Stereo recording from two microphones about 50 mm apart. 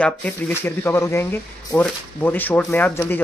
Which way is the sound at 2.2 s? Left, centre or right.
Left.